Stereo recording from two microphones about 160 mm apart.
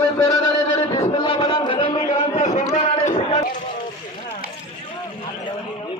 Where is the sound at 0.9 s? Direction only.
30° left (ahead or behind).